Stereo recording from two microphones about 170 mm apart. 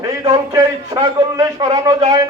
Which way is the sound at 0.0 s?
20° right (ahead or behind).